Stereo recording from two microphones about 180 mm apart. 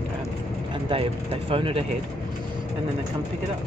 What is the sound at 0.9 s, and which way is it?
Speech, 30° right (ahead or behind).